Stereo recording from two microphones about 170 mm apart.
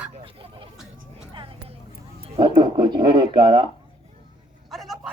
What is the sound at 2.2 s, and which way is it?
A man's voice, 30° right (ahead or behind).